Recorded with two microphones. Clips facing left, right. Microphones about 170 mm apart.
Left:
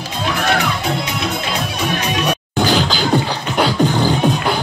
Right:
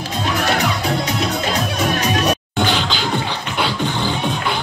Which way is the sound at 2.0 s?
40° right (ahead or behind).